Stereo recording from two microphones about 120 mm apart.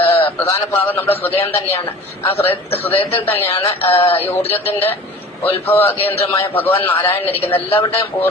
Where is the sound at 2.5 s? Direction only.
55° left (ahead or behind).